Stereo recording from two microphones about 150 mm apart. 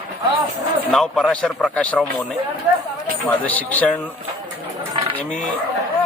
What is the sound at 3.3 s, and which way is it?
Speech, 10° left (ahead or behind).